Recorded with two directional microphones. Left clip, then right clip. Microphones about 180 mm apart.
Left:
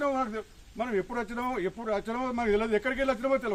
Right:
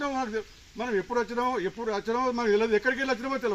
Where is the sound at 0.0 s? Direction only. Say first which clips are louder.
Left 1 dB; 15° left (ahead or behind).